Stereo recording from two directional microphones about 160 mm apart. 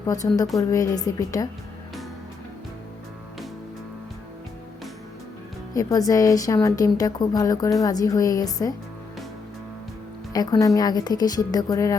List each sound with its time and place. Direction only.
0.5 s a woman's voice: 20° left (ahead or behind)
5.7 s a woman's voice: 20° left (ahead or behind)
10.3 s a woman's voice: 25° left (ahead or behind)